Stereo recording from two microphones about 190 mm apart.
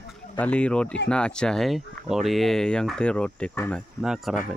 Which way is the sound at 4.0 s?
Centre (ahead or behind).